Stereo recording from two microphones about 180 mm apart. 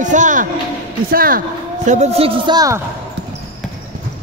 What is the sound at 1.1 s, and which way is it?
Speech, 55° right (ahead or behind).